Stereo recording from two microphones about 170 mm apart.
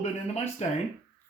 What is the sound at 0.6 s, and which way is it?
Speech, 40° left (ahead or behind).